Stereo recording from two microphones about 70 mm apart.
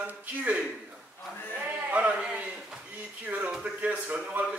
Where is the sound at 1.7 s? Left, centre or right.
Right.